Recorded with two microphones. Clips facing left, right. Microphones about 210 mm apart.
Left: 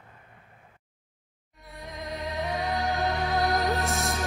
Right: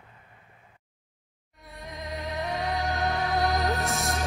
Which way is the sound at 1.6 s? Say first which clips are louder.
Left 1 dB; centre (ahead or behind).